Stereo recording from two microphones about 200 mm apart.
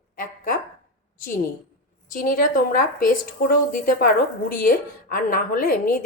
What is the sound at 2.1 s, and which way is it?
A woman's voice, 45° left (ahead or behind).